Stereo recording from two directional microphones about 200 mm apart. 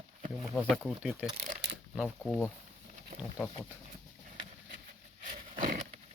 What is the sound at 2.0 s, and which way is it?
Speech, 5° left (ahead or behind).